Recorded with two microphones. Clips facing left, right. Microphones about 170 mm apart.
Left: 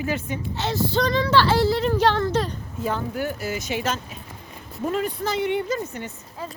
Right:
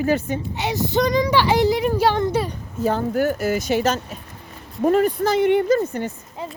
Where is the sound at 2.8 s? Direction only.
40° right (ahead or behind).